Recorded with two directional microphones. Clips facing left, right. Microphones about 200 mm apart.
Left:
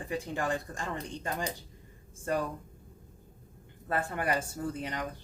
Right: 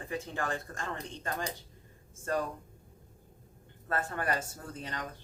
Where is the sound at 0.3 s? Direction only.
15° left (ahead or behind).